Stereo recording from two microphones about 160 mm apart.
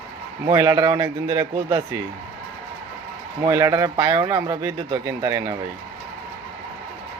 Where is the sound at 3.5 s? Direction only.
20° right (ahead or behind).